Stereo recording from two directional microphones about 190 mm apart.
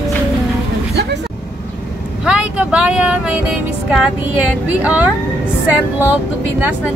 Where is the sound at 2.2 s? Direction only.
5° right (ahead or behind).